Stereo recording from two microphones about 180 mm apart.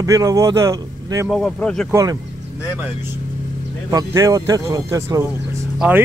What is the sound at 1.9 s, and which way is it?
Speech, 20° right (ahead or behind).